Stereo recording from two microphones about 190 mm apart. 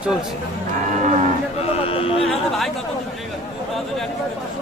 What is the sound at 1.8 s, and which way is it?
Speech, 30° left (ahead or behind).